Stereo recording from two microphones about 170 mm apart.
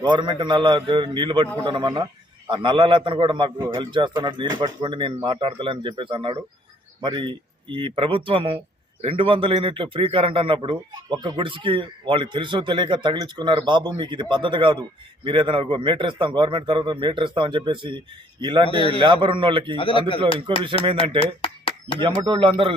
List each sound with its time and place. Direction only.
0.0 s speech: 25° right (ahead or behind)
18.7 s speech: 30° left (ahead or behind)
18.9 s speech: 30° right (ahead or behind)
19.7 s speech: 30° left (ahead or behind)
20.5 s speech: 30° right (ahead or behind)
21.2 s a sound: 30° left (ahead or behind)
22.0 s speech: 25° right (ahead or behind)